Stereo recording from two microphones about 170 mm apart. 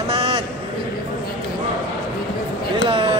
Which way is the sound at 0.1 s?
30° right (ahead or behind).